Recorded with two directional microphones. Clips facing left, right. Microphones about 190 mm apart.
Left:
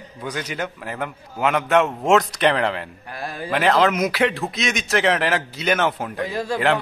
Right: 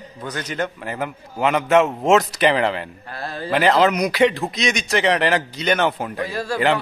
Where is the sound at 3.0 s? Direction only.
15° left (ahead or behind).